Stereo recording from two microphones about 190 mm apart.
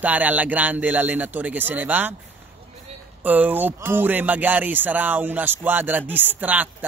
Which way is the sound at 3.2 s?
10° right (ahead or behind).